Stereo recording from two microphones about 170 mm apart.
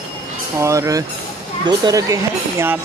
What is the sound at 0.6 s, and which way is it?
Speech, 20° right (ahead or behind).